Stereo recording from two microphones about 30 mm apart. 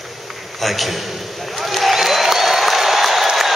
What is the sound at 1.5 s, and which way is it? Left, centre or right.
Applause, centre.